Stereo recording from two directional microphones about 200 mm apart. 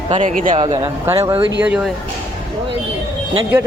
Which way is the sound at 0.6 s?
25° right (ahead or behind).